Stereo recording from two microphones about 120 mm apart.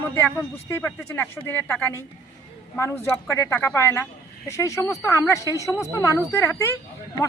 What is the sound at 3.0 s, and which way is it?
A woman's voice, 20° left (ahead or behind).